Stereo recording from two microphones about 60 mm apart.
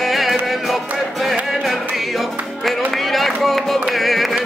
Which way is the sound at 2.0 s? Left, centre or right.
Centre.